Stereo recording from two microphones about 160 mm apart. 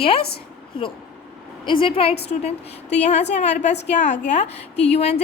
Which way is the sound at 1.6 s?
30° left (ahead or behind).